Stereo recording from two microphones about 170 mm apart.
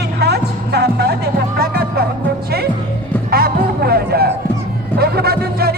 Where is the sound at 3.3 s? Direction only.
65° right (ahead or behind).